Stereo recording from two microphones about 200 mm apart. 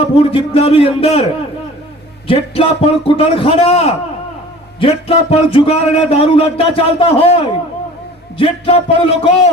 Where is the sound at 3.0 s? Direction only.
25° left (ahead or behind).